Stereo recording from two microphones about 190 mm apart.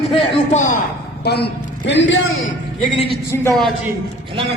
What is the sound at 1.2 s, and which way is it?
A woman's voice, 60° left (ahead or behind).